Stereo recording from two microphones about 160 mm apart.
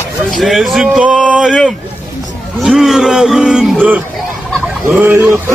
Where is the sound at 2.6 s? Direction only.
Centre (ahead or behind).